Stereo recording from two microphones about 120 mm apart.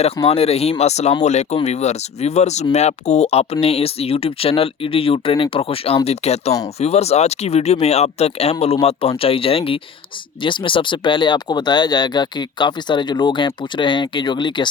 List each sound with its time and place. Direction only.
0.3 s speech: 55° left (ahead or behind)